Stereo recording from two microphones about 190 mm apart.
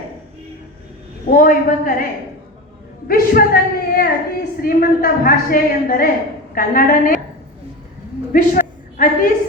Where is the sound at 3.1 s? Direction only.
50° left (ahead or behind).